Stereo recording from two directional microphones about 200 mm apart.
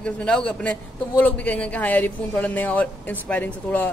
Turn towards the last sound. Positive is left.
turn(degrees=10)  # may be behind; listen again after turning